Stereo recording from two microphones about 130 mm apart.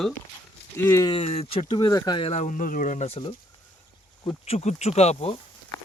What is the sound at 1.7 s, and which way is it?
Speech, 35° left (ahead or behind).